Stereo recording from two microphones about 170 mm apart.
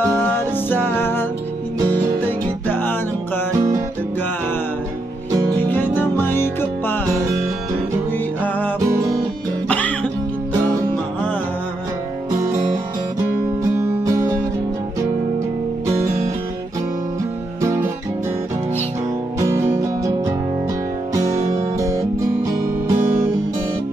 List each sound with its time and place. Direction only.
0.1 s music: 10° left (ahead or behind)
2.7 s music: 10° left (ahead or behind)
3.5 s music: 20° right (ahead or behind)
5.7 s music: 10° left (ahead or behind)
8.8 s music: 20° right (ahead or behind)
9.7 s music: 10° left (ahead or behind)
13.7 s music: 20° right (ahead or behind)
19.5 s music: 15° right (ahead or behind)